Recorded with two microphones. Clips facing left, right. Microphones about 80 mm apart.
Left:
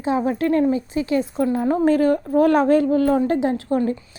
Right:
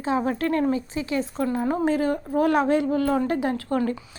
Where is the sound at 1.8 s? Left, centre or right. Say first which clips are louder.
Left 6 dB; left.